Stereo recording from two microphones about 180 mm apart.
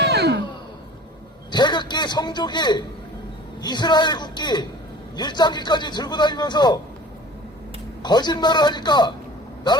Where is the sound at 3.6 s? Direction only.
25° left (ahead or behind).